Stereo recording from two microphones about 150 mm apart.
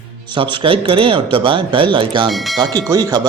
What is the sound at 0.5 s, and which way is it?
Speech, 35° right (ahead or behind).